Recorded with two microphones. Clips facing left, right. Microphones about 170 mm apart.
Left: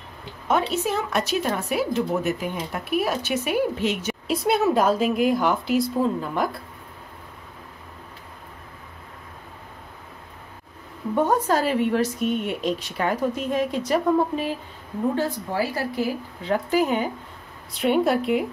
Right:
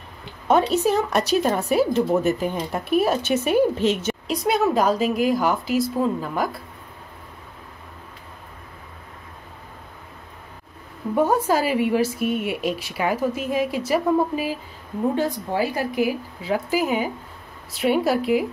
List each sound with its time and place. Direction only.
0.5 s speech: 35° right (ahead or behind)
4.3 s a woman's voice: centre (ahead or behind)
11.1 s a woman's voice: 10° right (ahead or behind)
15.1 s a woman's voice: 15° right (ahead or behind)